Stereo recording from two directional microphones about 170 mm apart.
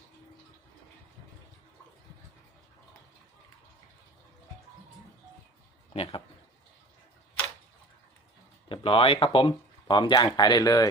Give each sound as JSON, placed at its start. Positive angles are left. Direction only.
{"t": 5.9, "sound": "speech", "side_deg": 35}
{"t": 8.7, "sound": "speech", "side_deg": 35}